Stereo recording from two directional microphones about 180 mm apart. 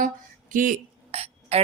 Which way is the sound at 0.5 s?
45° right (ahead or behind).